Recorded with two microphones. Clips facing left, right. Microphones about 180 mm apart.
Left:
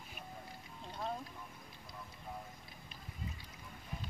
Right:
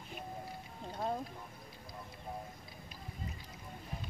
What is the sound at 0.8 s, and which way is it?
Music, 50° right (ahead or behind).